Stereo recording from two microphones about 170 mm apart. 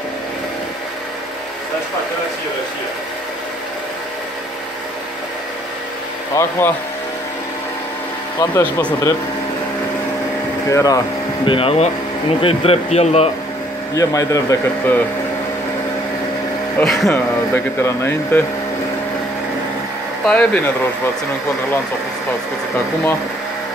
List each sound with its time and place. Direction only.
6.4 s a man's voice: 20° left (ahead or behind)
8.4 s speech: 15° left (ahead or behind)
10.7 s a man's voice: 20° left (ahead or behind)
11.4 s a man's voice: 30° left (ahead or behind)
13.9 s a man's voice: 20° left (ahead or behind)
16.7 s speech: centre (ahead or behind)
17.8 s speech: 15° left (ahead or behind)
20.2 s speech: 10° left (ahead or behind)